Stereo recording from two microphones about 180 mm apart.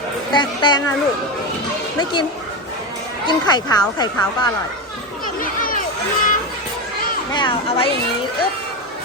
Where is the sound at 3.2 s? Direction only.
25° left (ahead or behind).